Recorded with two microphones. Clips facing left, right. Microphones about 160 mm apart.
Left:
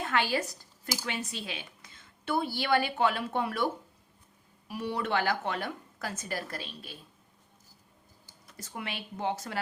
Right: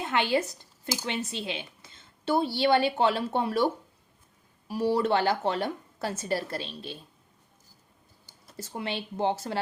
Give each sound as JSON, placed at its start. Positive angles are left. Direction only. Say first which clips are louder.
{"t": 0.0, "sound": "a woman's voice", "louder": "right 3 dB", "side_deg": -20}
{"t": 4.7, "sound": "a woman's voice", "louder": "right 6 dB", "side_deg": -30}
{"t": 8.5, "sound": "a woman's voice", "louder": "right 6 dB", "side_deg": -30}